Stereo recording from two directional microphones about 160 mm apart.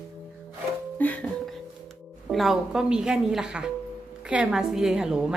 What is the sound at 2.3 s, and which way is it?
A woman's voice, centre (ahead or behind).